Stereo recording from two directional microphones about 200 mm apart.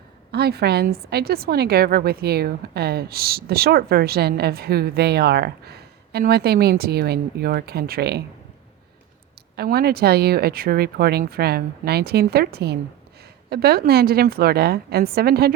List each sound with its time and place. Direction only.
0.3 s a woman's voice: 55° right (ahead or behind)
9.6 s a woman's voice: 50° right (ahead or behind)